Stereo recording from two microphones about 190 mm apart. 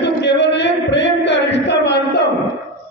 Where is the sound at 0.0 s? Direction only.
65° left (ahead or behind).